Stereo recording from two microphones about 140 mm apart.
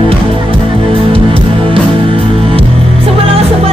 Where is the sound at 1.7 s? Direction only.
40° right (ahead or behind).